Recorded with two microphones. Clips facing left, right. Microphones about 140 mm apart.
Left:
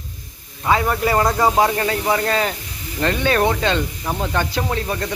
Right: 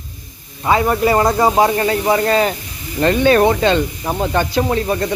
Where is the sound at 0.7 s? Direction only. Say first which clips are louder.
Right 4 dB; 15° right (ahead or behind).